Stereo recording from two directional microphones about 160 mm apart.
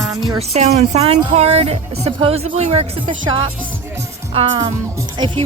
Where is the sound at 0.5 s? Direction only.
40° right (ahead or behind).